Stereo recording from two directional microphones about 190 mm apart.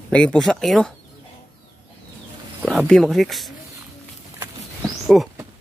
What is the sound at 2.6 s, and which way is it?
Speech, centre (ahead or behind).